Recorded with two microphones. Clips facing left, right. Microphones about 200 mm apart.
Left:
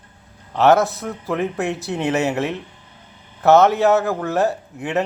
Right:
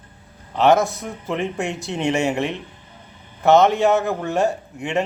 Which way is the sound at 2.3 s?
15° right (ahead or behind).